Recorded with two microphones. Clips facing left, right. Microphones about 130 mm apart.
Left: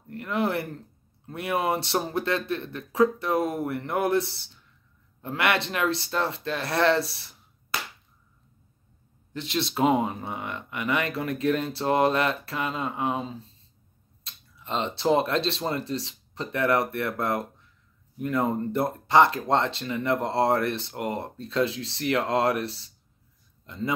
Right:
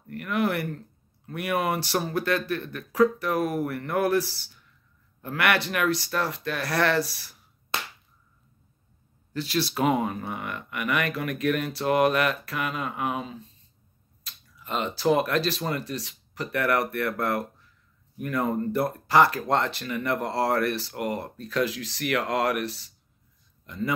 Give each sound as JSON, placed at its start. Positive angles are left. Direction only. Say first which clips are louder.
{"t": 0.1, "sound": "speech", "louder": "even", "side_deg": 25}
{"t": 7.7, "sound": "a sound", "louder": "even", "side_deg": -25}
{"t": 9.3, "sound": "a man's voice", "louder": "right 2 dB", "side_deg": 20}